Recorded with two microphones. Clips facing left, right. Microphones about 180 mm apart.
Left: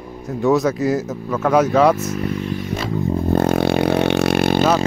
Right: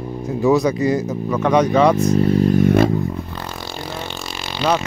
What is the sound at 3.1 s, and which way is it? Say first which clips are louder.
Vehicle: left 13 dB; 45° left (ahead or behind).